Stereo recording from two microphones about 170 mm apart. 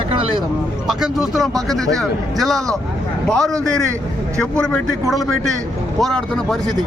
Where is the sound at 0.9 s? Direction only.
Centre (ahead or behind).